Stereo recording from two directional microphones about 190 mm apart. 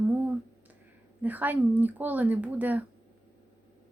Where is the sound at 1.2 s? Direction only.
10° right (ahead or behind).